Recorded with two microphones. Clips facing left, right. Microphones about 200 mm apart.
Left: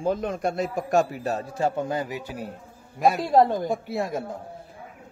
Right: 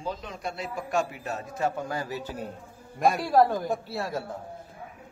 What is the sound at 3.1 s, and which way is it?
A woman's voice, 20° left (ahead or behind).